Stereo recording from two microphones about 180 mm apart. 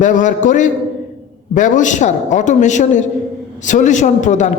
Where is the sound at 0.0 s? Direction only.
45° left (ahead or behind).